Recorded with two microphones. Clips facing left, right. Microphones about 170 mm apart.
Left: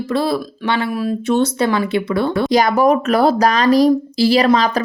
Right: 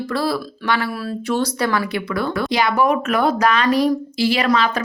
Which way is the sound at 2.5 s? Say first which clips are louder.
Left 4 dB; 40° left (ahead or behind).